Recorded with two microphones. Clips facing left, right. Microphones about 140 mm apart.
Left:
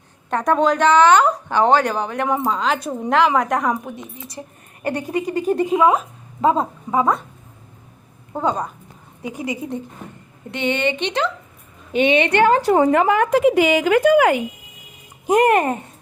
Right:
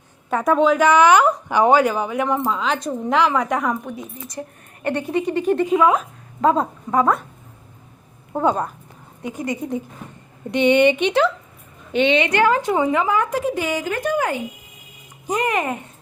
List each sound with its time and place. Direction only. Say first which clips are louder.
0.3 s a woman's voice: right 1 dB; 5° right (ahead or behind)
2.7 s a woman's voice: left 1 dB; 10° left (ahead or behind)
4.8 s a woman's voice: right 1 dB; 35° left (ahead or behind)
5.6 s a woman's voice: left 1 dB; 5° left (ahead or behind)
8.3 s a woman's voice: right 2 dB; 5° right (ahead or behind)
9.2 s a woman's voice: right 1 dB; 10° left (ahead or behind)
10.5 s speech: right 6 dB; 15° right (ahead or behind)
12.1 s a woman's voice: left 2 dB; 55° left (ahead or behind)
12.4 s speech: left 3 dB; 30° left (ahead or behind); by 14.4 s 80° left
15.3 s a child's voice: left 7 dB; 50° left (ahead or behind)